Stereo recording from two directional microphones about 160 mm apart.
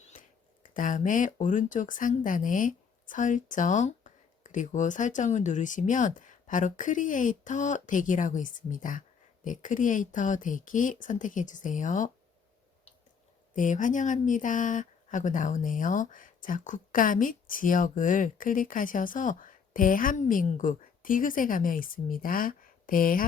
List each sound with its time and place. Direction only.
0.1 s speech: 55° left (ahead or behind)
13.5 s speech: 55° left (ahead or behind)